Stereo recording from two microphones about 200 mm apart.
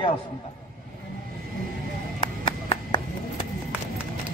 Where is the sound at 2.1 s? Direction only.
20° left (ahead or behind).